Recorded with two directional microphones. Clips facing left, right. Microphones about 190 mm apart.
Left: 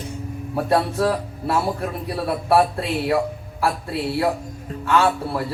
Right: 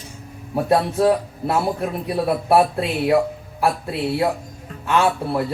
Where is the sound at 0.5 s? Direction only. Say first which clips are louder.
Right 2 dB; 20° right (ahead or behind).